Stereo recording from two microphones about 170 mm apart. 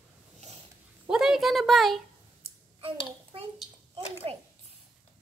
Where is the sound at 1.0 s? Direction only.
5° right (ahead or behind).